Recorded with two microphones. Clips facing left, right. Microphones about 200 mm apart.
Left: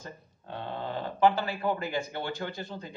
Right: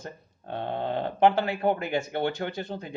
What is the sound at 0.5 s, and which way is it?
Speech, 60° right (ahead or behind).